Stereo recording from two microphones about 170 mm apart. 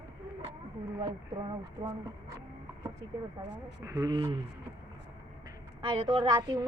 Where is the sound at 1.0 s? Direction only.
25° right (ahead or behind).